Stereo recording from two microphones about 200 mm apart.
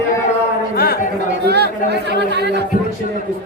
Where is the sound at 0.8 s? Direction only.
50° left (ahead or behind).